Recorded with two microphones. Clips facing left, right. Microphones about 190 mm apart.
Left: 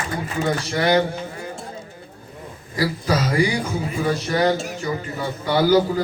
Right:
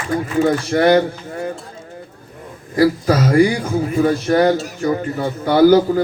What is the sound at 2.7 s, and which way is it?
A man's voice, 55° right (ahead or behind).